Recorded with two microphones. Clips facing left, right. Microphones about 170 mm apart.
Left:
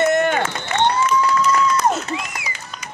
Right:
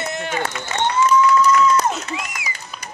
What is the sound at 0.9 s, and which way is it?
Applause, 35° left (ahead or behind).